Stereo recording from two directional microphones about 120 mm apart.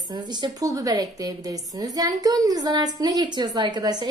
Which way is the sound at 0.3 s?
35° right (ahead or behind).